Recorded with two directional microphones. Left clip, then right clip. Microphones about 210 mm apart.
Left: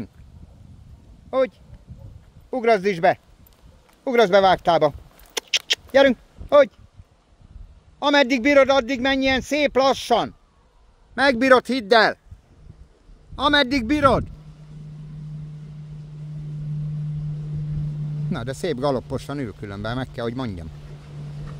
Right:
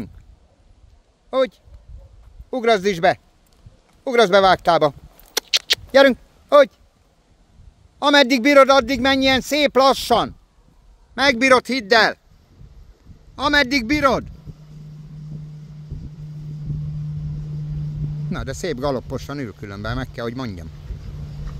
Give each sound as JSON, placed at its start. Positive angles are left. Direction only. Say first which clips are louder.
{"t": 1.3, "sound": "speech", "louder": "right 2 dB", "side_deg": -15}
{"t": 4.0, "sound": "a sound", "louder": "right 2 dB", "side_deg": -20}
{"t": 8.0, "sound": "speech", "louder": "right 3 dB", "side_deg": -25}
{"t": 11.1, "sound": "speech", "louder": "right 1 dB", "side_deg": -5}
{"t": 13.4, "sound": "speech", "louder": "right 1 dB", "side_deg": 0}
{"t": 18.3, "sound": "speech", "louder": "even", "side_deg": 0}